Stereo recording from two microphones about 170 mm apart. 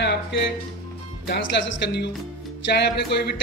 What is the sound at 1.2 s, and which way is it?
Speech, 85° left.